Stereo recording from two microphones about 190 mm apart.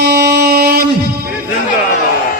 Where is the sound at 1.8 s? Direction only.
40° left (ahead or behind).